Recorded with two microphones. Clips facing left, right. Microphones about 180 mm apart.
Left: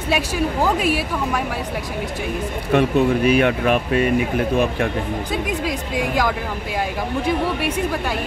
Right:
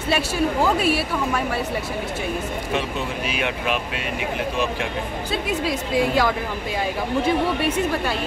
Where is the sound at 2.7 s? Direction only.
55° left (ahead or behind).